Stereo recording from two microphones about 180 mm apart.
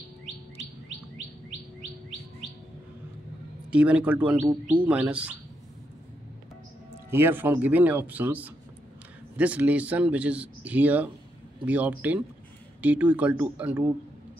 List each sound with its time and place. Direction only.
3.7 s a man's voice: 5° right (ahead or behind)
7.1 s a man's voice: 10° right (ahead or behind)